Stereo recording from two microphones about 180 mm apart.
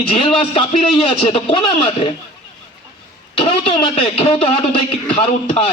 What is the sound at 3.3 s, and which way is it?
A man's voice, 30° left (ahead or behind).